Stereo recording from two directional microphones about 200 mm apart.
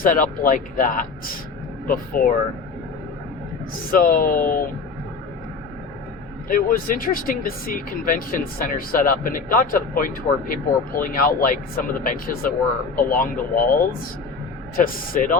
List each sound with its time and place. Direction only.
0.0 s speech: 45° left (ahead or behind)
3.9 s speech: 45° left (ahead or behind)
6.5 s speech: 45° left (ahead or behind)